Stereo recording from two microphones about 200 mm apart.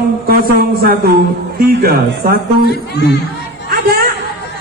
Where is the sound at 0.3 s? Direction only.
50° right (ahead or behind).